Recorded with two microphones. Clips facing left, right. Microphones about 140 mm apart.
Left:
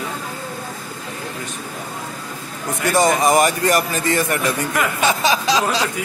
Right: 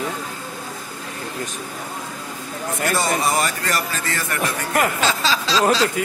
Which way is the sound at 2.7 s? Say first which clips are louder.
Left 5 dB; 15° left (ahead or behind).